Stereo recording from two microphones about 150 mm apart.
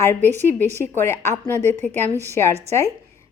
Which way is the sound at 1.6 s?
50° right (ahead or behind).